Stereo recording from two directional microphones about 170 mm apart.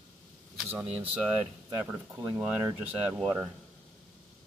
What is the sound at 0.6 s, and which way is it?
Speech, 10° right (ahead or behind).